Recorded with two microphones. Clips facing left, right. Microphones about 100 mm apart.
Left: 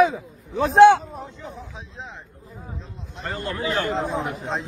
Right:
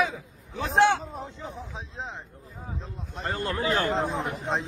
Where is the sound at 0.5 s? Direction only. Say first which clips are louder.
Left 9 dB; 55° left (ahead or behind).